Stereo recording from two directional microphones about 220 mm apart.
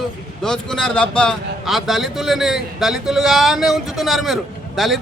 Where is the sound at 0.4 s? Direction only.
5° left (ahead or behind).